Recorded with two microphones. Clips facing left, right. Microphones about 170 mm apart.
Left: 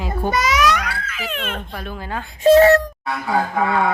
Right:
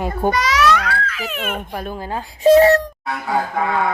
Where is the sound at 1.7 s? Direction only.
40° right (ahead or behind).